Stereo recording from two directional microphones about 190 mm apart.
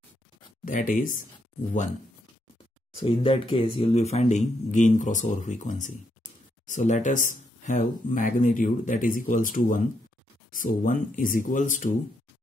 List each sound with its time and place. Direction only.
0.7 s speech: 45° left (ahead or behind)
3.0 s speech: 30° left (ahead or behind)